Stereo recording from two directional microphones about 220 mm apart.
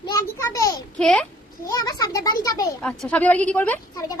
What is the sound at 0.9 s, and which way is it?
Speech, 5° left (ahead or behind).